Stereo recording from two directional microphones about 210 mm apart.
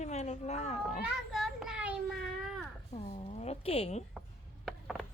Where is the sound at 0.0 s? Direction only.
30° left (ahead or behind).